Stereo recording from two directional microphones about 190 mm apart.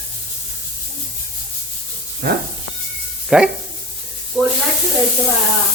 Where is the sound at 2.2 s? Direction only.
55° right (ahead or behind).